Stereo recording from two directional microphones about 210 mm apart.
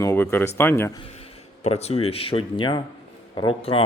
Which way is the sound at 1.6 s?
30° left (ahead or behind).